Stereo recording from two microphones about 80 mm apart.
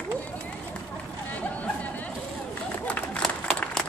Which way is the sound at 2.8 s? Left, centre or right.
Centre.